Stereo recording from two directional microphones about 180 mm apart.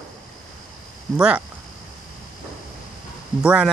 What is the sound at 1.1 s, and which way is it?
Speech, 5° right (ahead or behind).